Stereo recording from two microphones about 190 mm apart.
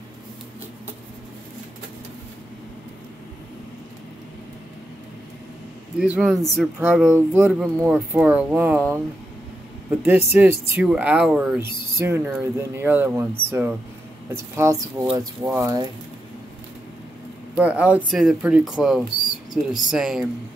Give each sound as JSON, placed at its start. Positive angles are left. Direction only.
{"t": 5.9, "sound": "speech", "side_deg": -5}
{"t": 9.8, "sound": "speech", "side_deg": -10}
{"t": 17.6, "sound": "speech", "side_deg": -5}